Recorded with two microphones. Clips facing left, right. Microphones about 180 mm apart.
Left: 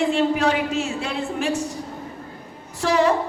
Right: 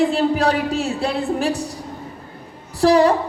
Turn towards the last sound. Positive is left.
turn(degrees=-35)  # may be behind; listen again after turning